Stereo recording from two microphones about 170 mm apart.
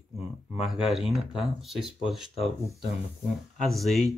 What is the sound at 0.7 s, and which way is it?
Speech, centre (ahead or behind).